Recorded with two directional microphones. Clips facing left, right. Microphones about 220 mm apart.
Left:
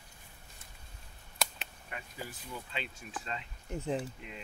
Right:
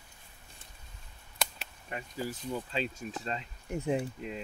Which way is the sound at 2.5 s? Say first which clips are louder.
Right 8 dB; 35° right (ahead or behind).